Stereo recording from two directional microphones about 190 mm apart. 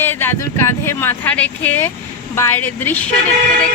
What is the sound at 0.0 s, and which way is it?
Speech, 10° left (ahead or behind).